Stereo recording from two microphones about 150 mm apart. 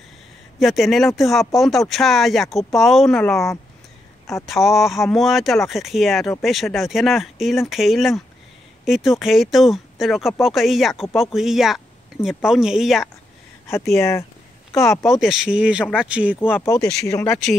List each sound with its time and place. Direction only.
0.6 s speech: centre (ahead or behind)
13.7 s speech: 15° left (ahead or behind)
15.1 s speech: centre (ahead or behind)
15.8 s speech: 10° left (ahead or behind)
16.1 s speech: 10° right (ahead or behind)
16.3 s speech: 15° left (ahead or behind)